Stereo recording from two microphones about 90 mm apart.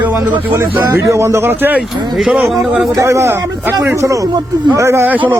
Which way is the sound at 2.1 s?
5° right (ahead or behind).